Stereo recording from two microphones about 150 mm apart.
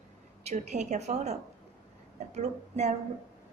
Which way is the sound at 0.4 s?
50° right (ahead or behind).